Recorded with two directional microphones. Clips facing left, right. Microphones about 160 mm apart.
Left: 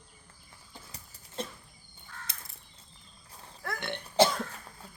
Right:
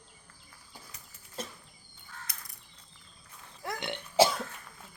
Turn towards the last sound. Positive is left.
turn(degrees=-5)  # may be behind; listen again after turning